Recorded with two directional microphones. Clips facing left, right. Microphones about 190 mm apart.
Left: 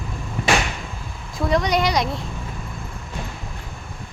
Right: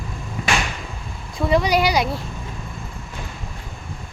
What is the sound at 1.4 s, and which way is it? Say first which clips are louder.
Speech: right 2 dB; 5° right (ahead or behind).